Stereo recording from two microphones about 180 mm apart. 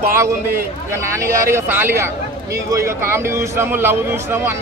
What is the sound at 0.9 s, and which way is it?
A man's voice, 15° right (ahead or behind).